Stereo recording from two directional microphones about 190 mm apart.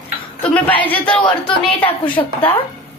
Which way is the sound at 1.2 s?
25° left (ahead or behind).